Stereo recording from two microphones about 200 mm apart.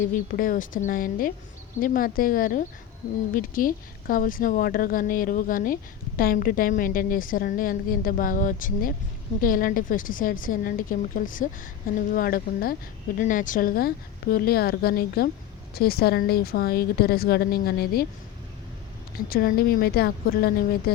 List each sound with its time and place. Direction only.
0.0 s a woman's voice: 45° left (ahead or behind)
19.3 s a woman's voice: 50° left (ahead or behind)